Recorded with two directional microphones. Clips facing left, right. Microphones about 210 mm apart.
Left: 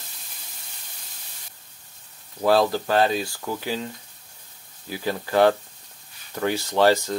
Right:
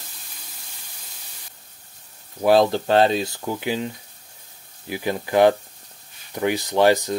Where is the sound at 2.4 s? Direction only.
20° right (ahead or behind).